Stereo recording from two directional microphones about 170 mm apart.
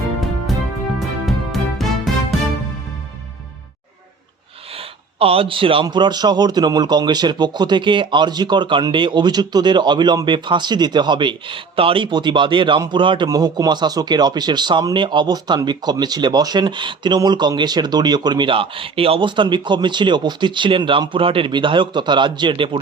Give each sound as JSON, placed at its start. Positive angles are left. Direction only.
{"t": 0.9, "sound": "music", "side_deg": 0}
{"t": 4.8, "sound": "speech", "side_deg": -35}